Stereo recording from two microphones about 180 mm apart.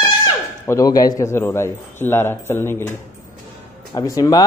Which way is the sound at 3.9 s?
20° left (ahead or behind).